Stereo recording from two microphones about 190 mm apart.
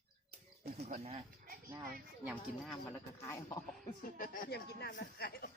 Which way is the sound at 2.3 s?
5° left (ahead or behind).